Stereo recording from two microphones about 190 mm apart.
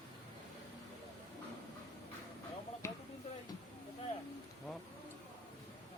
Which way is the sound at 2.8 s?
15° left (ahead or behind).